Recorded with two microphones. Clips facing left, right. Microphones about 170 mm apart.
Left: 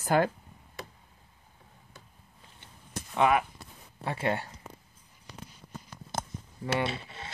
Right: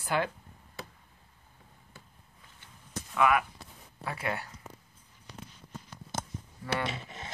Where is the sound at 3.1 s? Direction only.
25° left (ahead or behind).